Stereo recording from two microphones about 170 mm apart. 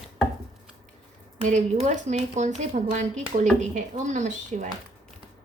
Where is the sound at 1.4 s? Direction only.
45° right (ahead or behind).